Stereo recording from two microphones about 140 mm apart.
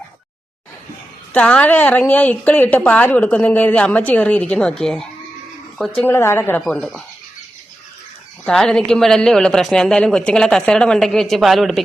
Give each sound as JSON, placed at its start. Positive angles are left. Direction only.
{"t": 1.3, "sound": "a woman's voice", "side_deg": 10}
{"t": 6.1, "sound": "a woman's voice", "side_deg": 15}
{"t": 8.4, "sound": "speech", "side_deg": 5}